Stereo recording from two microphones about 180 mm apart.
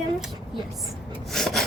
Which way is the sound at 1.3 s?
Centre (ahead or behind).